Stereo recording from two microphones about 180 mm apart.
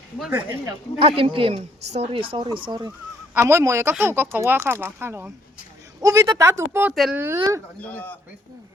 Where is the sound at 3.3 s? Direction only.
10° right (ahead or behind).